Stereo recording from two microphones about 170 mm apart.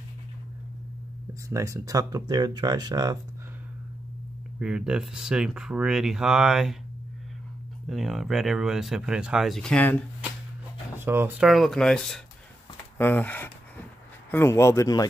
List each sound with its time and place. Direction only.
1.5 s speech: 20° right (ahead or behind)
4.6 s speech: 5° right (ahead or behind)
7.8 s speech: centre (ahead or behind)
11.0 s speech: 15° right (ahead or behind)
11.4 s speech: centre (ahead or behind); by 15.0 s 20° left (ahead or behind)